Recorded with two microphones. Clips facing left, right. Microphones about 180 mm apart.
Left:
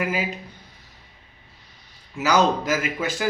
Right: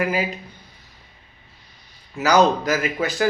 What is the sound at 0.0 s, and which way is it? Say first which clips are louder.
Speech: right 3 dB; 40° right (ahead or behind).